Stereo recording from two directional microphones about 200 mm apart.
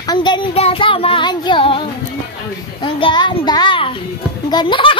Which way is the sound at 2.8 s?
25° left (ahead or behind).